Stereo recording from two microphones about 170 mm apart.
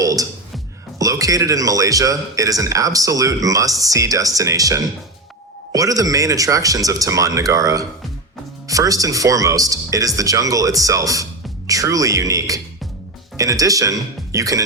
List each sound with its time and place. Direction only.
0.0 s music: 20° right (ahead or behind)
0.9 s speech: 20° right (ahead or behind)